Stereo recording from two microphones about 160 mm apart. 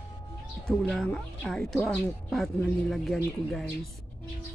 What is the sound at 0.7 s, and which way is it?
Speech, 5° left (ahead or behind).